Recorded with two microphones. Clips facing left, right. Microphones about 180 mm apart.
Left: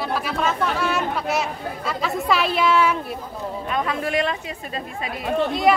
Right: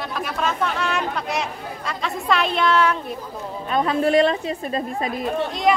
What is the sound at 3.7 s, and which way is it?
A woman's voice, 35° right (ahead or behind).